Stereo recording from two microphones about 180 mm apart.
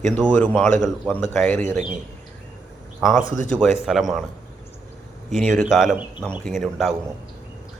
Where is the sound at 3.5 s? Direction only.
5° left (ahead or behind).